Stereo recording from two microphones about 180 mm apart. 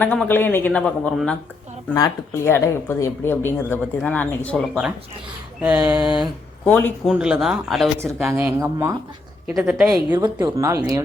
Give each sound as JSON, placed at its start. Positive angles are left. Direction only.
{"t": 0.0, "sound": "speech", "side_deg": 10}
{"t": 2.0, "sound": "speech", "side_deg": 15}
{"t": 6.7, "sound": "speech", "side_deg": 10}
{"t": 7.0, "sound": "speech", "side_deg": -5}
{"t": 8.3, "sound": "speech", "side_deg": -15}
{"t": 9.5, "sound": "speech", "side_deg": 0}
{"t": 10.3, "sound": "speech", "side_deg": -15}